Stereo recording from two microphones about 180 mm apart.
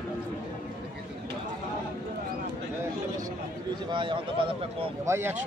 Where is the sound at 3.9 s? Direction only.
25° right (ahead or behind).